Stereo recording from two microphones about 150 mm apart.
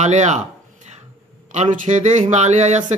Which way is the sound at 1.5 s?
55° right (ahead or behind).